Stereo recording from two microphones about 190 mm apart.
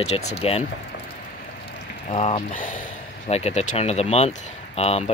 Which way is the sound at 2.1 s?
35° left (ahead or behind).